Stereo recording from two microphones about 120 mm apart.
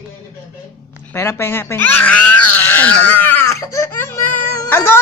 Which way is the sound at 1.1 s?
20° left (ahead or behind).